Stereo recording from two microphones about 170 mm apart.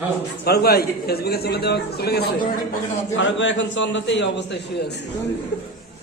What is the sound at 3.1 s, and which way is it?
A man's voice, 90° left.